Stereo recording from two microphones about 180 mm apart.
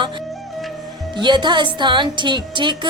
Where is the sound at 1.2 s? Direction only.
25° right (ahead or behind).